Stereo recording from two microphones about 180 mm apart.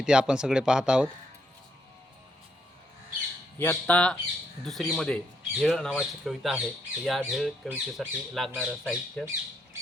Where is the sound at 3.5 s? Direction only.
10° left (ahead or behind).